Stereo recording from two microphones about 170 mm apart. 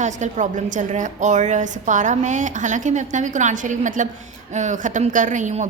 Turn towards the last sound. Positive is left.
turn(degrees=-45)  # may be behind; listen again after turning